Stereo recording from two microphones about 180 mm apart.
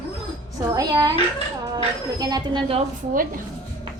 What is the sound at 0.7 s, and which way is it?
Speech, 20° right (ahead or behind).